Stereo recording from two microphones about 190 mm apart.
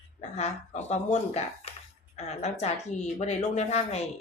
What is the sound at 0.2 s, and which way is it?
Speech, 35° left (ahead or behind).